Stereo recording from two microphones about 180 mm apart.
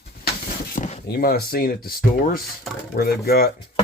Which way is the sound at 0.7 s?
40° left (ahead or behind).